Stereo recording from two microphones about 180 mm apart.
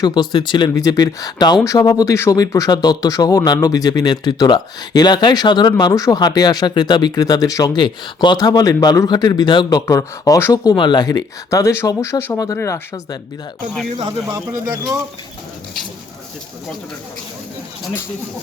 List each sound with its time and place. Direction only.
0.0 s speech: 25° left (ahead or behind)